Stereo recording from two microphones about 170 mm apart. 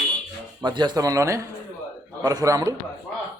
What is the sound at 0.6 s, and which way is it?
A man's voice, 25° right (ahead or behind).